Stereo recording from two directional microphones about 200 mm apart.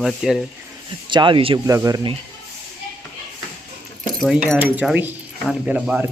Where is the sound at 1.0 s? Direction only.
25° right (ahead or behind).